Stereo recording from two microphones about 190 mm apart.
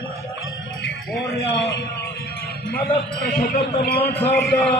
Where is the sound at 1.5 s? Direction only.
65° left (ahead or behind).